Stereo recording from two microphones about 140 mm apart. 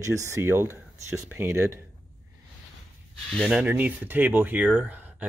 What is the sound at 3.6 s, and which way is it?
Speech, 10° right (ahead or behind).